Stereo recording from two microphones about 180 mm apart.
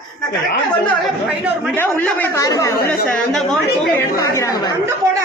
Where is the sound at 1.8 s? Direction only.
10° left (ahead or behind).